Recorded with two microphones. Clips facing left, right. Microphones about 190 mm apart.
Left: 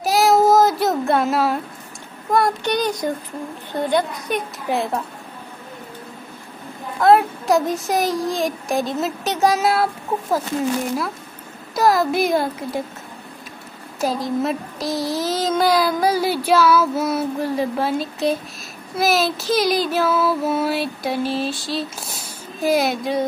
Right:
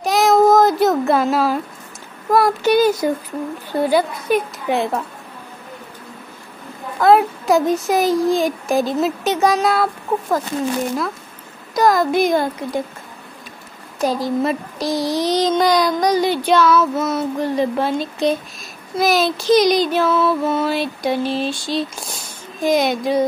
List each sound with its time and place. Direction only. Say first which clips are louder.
0.0 s child singing: right 2 dB; 5° left (ahead or behind)
7.0 s child singing: right 1 dB; centre (ahead or behind)
11.7 s child singing: right 2 dB; 5° left (ahead or behind)
13.9 s child singing: right 2 dB; centre (ahead or behind)